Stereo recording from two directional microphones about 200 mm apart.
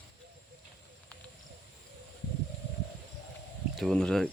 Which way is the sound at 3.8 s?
Centre (ahead or behind).